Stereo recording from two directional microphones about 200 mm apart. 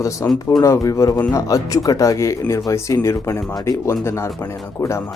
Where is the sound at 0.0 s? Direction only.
15° left (ahead or behind).